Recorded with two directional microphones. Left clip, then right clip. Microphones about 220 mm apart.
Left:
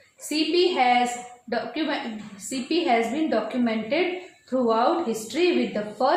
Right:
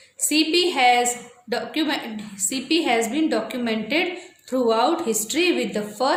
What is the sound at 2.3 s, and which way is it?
A woman's voice, 45° right (ahead or behind).